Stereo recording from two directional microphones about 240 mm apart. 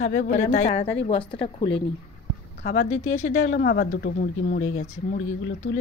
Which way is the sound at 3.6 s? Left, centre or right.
Left.